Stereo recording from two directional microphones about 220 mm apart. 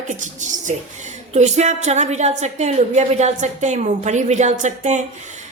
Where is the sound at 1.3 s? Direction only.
30° right (ahead or behind).